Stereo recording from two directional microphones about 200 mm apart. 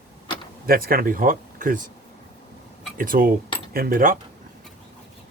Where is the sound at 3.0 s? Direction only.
45° right (ahead or behind).